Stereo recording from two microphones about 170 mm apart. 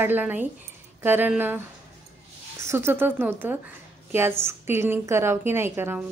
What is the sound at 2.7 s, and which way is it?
A woman's voice, 15° right (ahead or behind).